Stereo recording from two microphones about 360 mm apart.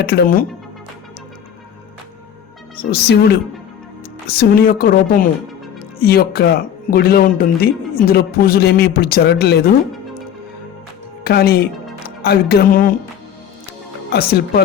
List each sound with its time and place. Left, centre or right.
0.0 s speech: left
2.9 s speech: left
11.2 s a woman's voice: left
14.1 s speech: left